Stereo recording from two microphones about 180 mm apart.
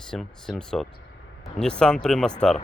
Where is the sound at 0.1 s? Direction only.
5° left (ahead or behind).